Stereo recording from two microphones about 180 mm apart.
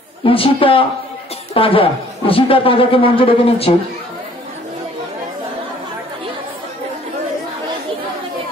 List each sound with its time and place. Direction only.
0.2 s a woman's voice: 30° left (ahead or behind)